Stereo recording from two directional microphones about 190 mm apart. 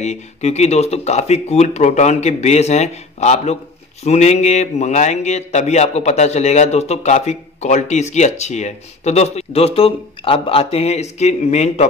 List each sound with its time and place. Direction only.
0.0 s speech: 35° left (ahead or behind)